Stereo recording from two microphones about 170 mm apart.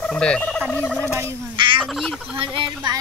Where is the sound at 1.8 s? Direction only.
Centre (ahead or behind).